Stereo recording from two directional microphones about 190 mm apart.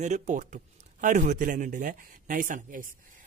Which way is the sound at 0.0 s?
40° right (ahead or behind).